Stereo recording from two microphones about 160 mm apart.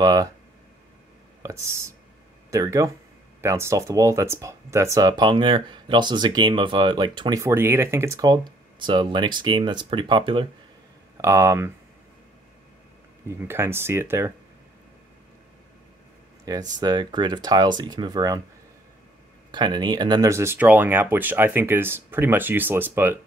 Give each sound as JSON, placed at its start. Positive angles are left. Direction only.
{"t": 0.0, "sound": "speech", "side_deg": -25}
{"t": 1.4, "sound": "speech", "side_deg": -15}
{"t": 11.1, "sound": "speech", "side_deg": -15}
{"t": 13.5, "sound": "speech", "side_deg": -15}
{"t": 16.5, "sound": "speech", "side_deg": -25}
{"t": 19.5, "sound": "speech", "side_deg": -30}